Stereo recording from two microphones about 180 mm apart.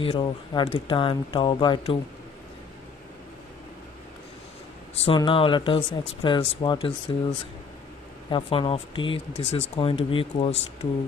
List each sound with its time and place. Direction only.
0.0 s speech: 30° left (ahead or behind)
5.0 s speech: 25° left (ahead or behind)